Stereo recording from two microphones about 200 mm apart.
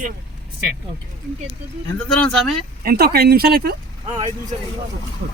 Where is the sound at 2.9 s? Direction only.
50° right (ahead or behind).